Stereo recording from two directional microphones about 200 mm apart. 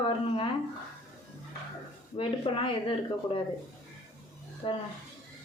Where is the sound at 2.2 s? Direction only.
25° left (ahead or behind).